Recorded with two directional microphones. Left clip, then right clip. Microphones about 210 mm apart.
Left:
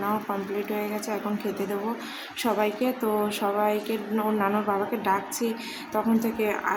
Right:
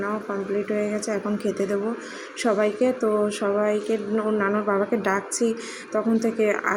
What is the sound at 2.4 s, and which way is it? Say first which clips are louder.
Speech: right 4 dB; 10° right (ahead or behind).